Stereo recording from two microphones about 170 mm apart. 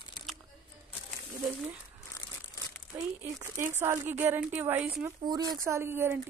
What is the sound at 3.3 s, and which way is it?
A woman's voice, 15° right (ahead or behind).